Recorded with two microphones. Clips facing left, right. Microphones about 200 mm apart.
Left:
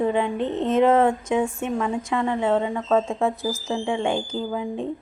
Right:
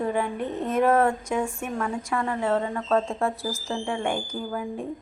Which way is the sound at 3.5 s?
Centre (ahead or behind).